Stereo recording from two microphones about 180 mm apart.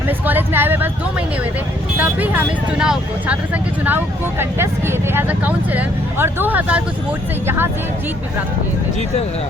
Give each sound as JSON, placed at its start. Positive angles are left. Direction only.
{"t": 0.3, "sound": "speech", "side_deg": -10}
{"t": 2.0, "sound": "speech", "side_deg": -10}